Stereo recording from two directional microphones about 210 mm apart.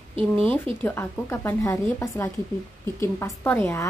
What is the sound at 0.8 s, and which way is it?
Speech, 10° left (ahead or behind).